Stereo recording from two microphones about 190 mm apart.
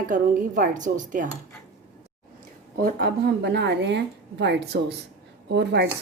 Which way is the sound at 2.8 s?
50° right (ahead or behind).